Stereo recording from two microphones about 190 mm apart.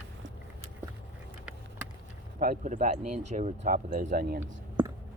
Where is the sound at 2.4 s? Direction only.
45° right (ahead or behind).